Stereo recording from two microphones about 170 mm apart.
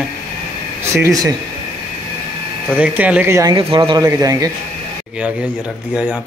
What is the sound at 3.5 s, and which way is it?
Speech, 30° right (ahead or behind).